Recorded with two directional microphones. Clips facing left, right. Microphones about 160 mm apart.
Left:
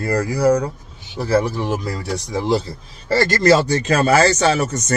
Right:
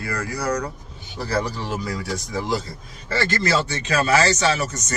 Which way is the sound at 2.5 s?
30° left (ahead or behind).